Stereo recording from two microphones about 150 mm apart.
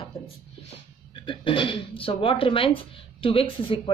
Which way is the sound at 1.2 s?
35° left (ahead or behind).